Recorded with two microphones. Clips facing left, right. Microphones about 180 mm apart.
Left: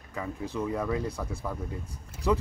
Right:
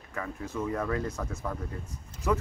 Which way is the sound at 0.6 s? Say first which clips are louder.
Even; 15° left (ahead or behind).